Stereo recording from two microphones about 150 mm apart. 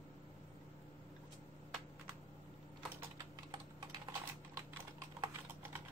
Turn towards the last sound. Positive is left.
turn(degrees=-25)  # may be behind; listen again after turning